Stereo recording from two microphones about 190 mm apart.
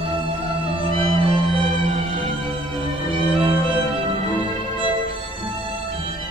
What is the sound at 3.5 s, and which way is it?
Music, 25° right (ahead or behind).